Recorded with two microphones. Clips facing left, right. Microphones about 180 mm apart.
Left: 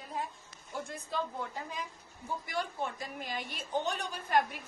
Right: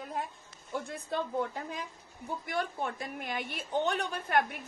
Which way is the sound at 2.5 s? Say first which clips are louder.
Right 3 dB; 55° right (ahead or behind).